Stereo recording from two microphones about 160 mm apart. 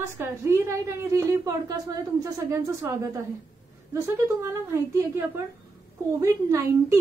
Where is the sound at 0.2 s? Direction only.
15° right (ahead or behind).